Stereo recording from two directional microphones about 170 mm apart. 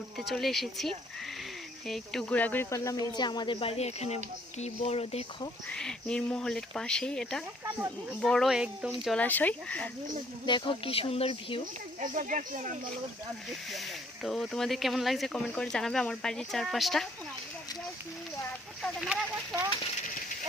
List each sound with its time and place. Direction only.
0.3 s speech: centre (ahead or behind); by 5.5 s 35° left (ahead or behind)
5.7 s speech: 5° left (ahead or behind)
10.4 s speech: 30° left (ahead or behind)
11.9 s speech: 45° right (ahead or behind)
14.3 s speech: centre (ahead or behind)
18.8 s speech: centre (ahead or behind)